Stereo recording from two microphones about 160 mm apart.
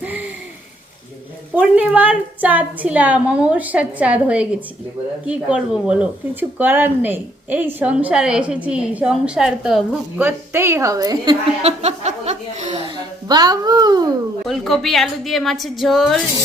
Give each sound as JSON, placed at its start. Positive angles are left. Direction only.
{"t": 0.0, "sound": "a sound", "side_deg": -10}
{"t": 1.5, "sound": "a woman's voice", "side_deg": -10}
{"t": 10.2, "sound": "a woman's voice", "side_deg": -15}
{"t": 11.6, "sound": "chuckle", "side_deg": -45}
{"t": 12.9, "sound": "a child's voice", "side_deg": -25}
{"t": 14.4, "sound": "a woman's voice", "side_deg": 0}